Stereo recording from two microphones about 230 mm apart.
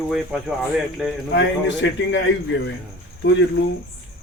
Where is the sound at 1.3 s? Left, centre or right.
Left.